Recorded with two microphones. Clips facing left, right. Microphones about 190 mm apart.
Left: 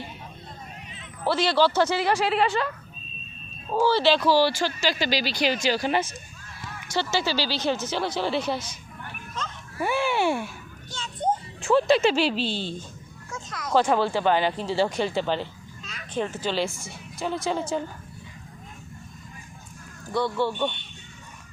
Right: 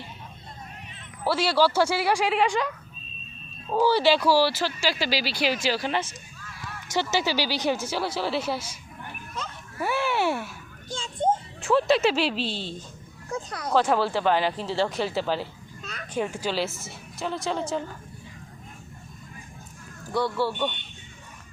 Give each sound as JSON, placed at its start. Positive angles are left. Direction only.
{"t": 1.2, "sound": "speech", "side_deg": -10}
{"t": 3.8, "sound": "speech", "side_deg": -15}
{"t": 5.9, "sound": "speech", "side_deg": 15}
{"t": 6.9, "sound": "speech", "side_deg": -15}
{"t": 10.9, "sound": "a child's voice", "side_deg": -25}
{"t": 11.6, "sound": "speech", "side_deg": 0}
{"t": 13.3, "sound": "speech", "side_deg": -30}
{"t": 13.7, "sound": "speech", "side_deg": 0}
{"t": 15.8, "sound": "vehicle", "side_deg": -55}
{"t": 16.1, "sound": "speech", "side_deg": -10}
{"t": 20.1, "sound": "speech", "side_deg": -10}